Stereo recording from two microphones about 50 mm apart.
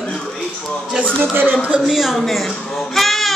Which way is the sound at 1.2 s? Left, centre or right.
Right.